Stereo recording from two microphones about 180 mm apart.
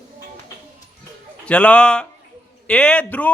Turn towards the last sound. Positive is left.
turn(degrees=5)  # may be behind; listen again after turning